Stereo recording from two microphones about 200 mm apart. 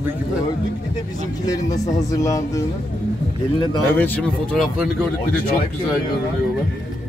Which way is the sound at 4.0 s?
5° left (ahead or behind).